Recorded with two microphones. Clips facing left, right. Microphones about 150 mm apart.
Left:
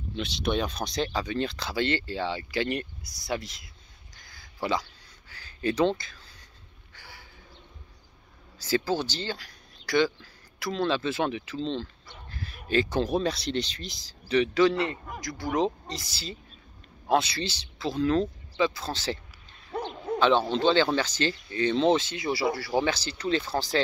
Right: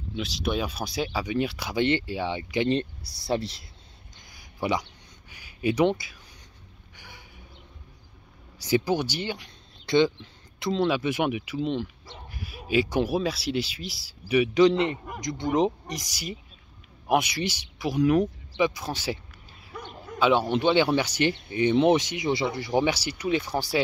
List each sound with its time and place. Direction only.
0.1 s speech: centre (ahead or behind); by 3.6 s 30° right (ahead or behind)
4.2 s a sound: 15° right (ahead or behind)
8.5 s speech: 15° right (ahead or behind)
20.2 s speech: 10° right (ahead or behind)